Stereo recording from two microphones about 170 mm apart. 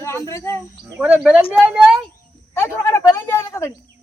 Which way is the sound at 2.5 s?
15° left (ahead or behind).